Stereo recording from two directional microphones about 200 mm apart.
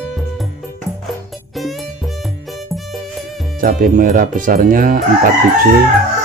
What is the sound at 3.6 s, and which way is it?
Speech, 45° right (ahead or behind).